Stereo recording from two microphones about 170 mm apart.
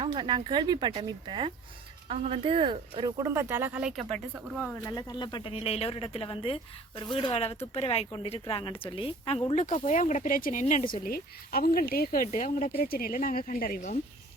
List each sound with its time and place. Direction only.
0.0 s speech: 25° right (ahead or behind); by 4.7 s centre (ahead or behind)
4.9 s speech: 25° left (ahead or behind)
9.5 s speech: 45° left (ahead or behind)
11.0 s speech: 60° left (ahead or behind)